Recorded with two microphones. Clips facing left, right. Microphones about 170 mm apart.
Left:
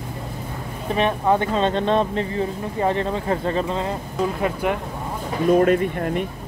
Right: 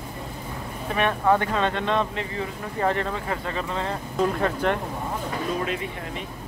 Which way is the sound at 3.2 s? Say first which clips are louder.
Left 7 dB; 35° left (ahead or behind).